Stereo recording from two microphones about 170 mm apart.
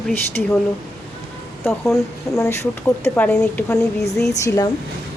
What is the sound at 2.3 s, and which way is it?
Speech, 15° left (ahead or behind).